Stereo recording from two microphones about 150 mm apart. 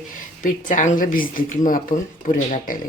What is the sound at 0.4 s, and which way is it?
Speech, 55° left (ahead or behind).